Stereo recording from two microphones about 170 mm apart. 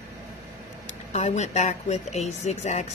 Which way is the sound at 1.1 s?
40° left (ahead or behind).